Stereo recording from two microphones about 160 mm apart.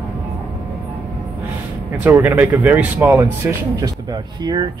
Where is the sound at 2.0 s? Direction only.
10° right (ahead or behind).